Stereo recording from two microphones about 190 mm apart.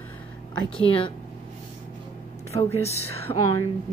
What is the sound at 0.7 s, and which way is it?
Speech, 30° left (ahead or behind).